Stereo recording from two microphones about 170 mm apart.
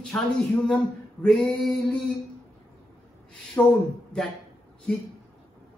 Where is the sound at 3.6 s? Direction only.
10° left (ahead or behind).